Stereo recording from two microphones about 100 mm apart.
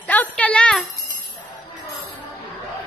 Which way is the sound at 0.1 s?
15° left (ahead or behind).